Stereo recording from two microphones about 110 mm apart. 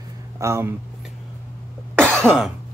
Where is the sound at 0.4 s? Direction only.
25° right (ahead or behind).